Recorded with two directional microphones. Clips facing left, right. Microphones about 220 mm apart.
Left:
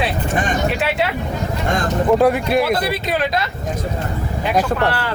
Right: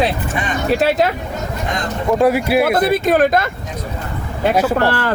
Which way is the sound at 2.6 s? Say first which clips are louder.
Right 5 dB; 50° right (ahead or behind).